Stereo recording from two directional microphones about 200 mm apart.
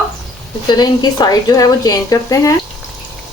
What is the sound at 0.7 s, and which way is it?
Speech, 20° left (ahead or behind).